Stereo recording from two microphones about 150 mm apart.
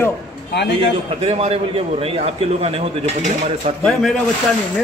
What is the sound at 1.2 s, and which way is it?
A man's voice, 40° right (ahead or behind).